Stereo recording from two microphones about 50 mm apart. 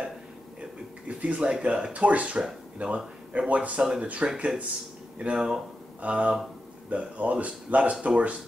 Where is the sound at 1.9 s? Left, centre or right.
Right.